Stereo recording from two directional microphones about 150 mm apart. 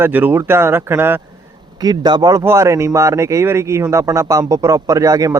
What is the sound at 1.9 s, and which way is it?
Speech, 25° right (ahead or behind).